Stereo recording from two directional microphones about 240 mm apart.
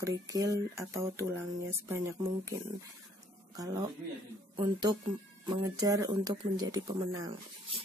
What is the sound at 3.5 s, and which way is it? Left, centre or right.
Speech, centre.